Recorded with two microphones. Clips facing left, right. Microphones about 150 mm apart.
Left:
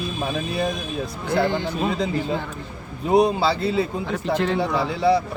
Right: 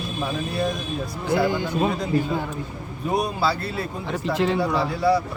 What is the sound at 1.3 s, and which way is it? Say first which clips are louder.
Speech: even; 5° right (ahead or behind).